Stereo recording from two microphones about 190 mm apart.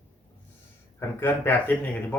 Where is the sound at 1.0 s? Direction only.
10° left (ahead or behind).